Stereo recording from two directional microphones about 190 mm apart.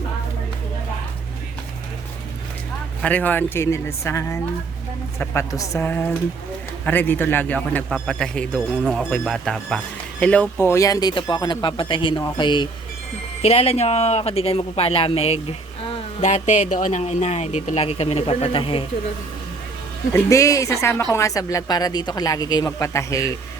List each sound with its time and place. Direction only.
3.0 s a man's voice: 10° left (ahead or behind); by 18.9 s 30° left (ahead or behind)
20.1 s a man's voice: 15° left (ahead or behind)